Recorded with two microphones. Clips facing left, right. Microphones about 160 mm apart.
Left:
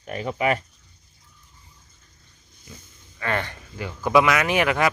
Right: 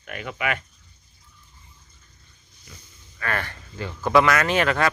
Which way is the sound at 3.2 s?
20° left (ahead or behind).